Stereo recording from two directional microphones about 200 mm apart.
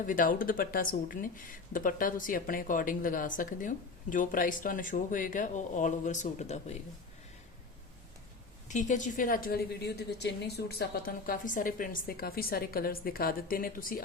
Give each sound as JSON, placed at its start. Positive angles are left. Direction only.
{"t": 0.0, "sound": "speech", "side_deg": 40}
{"t": 8.6, "sound": "a woman's voice", "side_deg": 40}